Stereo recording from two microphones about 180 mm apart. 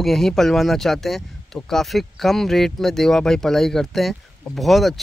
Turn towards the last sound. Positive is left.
turn(degrees=0)  # may be behind; listen again after turning